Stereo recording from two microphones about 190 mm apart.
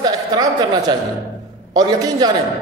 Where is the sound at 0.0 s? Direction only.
20° right (ahead or behind).